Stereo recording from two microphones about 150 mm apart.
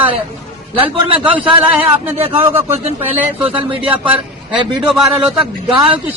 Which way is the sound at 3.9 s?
35° right (ahead or behind).